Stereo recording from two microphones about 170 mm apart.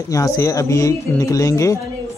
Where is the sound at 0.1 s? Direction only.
20° left (ahead or behind).